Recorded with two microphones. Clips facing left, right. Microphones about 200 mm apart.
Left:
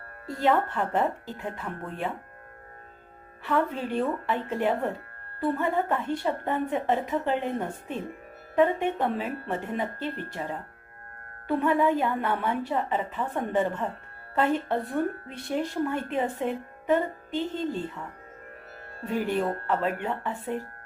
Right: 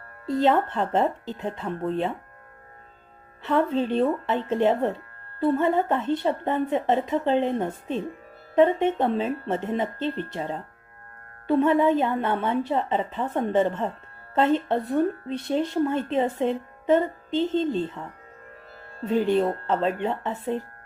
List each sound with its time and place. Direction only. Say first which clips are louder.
0.3 s a woman's voice: right 4 dB; 20° right (ahead or behind)
3.4 s a woman's voice: right 4 dB; 20° right (ahead or behind)
19.0 s a woman's voice: right 5 dB; 20° right (ahead or behind)